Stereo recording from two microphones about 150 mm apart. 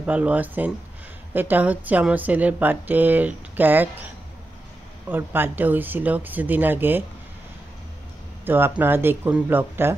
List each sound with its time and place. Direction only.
0.0 s a woman's voice: 10° right (ahead or behind)
5.1 s a woman's voice: 15° right (ahead or behind)
8.5 s a woman's voice: 15° right (ahead or behind)